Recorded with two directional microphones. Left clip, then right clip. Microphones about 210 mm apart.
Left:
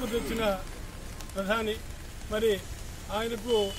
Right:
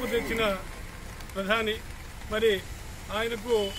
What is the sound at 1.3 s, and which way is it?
Speech, 15° left (ahead or behind).